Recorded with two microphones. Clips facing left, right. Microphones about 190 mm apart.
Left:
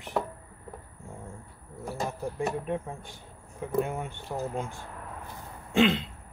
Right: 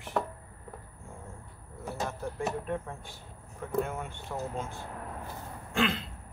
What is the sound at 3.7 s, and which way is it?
Speech, 15° left (ahead or behind).